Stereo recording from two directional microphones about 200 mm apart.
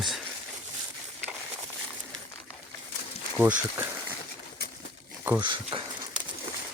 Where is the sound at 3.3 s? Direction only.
10° right (ahead or behind).